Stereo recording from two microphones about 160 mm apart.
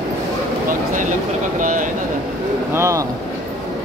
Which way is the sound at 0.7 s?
55° right (ahead or behind).